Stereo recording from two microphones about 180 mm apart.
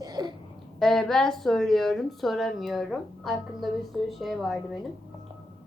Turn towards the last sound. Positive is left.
turn(degrees=0)  # may be behind; listen again after turning